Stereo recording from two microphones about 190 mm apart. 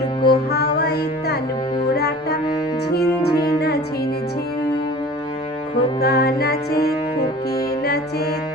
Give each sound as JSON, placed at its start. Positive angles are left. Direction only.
{"t": 0.3, "sound": "music", "side_deg": 55}
{"t": 6.0, "sound": "music", "side_deg": 55}